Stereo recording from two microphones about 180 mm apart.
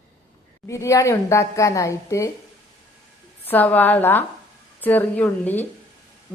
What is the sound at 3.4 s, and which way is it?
A woman's voice, 10° left (ahead or behind).